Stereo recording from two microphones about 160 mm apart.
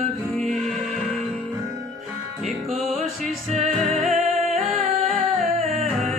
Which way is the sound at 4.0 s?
40° right (ahead or behind).